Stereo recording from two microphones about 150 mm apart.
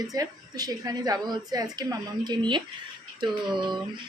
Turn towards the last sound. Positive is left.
turn(degrees=-30)  # may be behind; listen again after turning